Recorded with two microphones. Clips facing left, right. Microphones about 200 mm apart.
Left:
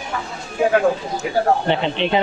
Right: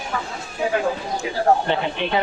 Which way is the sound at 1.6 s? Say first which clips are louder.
Left 3 dB; 20° left (ahead or behind).